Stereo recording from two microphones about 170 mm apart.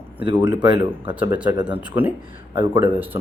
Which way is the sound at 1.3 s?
10° right (ahead or behind).